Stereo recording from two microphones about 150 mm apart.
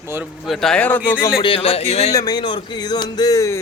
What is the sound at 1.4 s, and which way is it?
Speech, 35° left (ahead or behind).